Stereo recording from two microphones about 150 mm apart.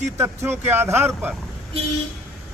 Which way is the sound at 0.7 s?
15° right (ahead or behind).